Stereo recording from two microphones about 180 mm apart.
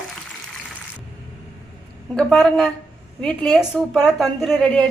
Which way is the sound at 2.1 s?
5° left (ahead or behind).